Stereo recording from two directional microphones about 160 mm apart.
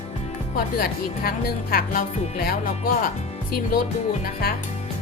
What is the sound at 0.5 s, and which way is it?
Speech, 70° left (ahead or behind).